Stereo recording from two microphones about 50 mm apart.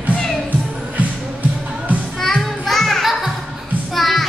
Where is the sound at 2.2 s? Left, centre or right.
Centre.